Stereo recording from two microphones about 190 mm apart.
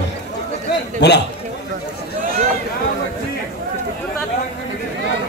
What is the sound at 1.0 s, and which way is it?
Speech, 60° left (ahead or behind).